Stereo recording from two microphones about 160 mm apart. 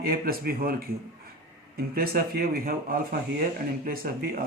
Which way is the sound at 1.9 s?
70° right (ahead or behind).